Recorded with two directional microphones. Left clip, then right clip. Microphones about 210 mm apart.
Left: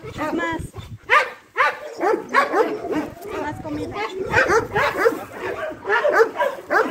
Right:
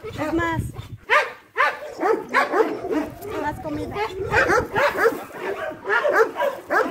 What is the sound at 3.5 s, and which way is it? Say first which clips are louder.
Bow-wow: even; 40° right (ahead or behind).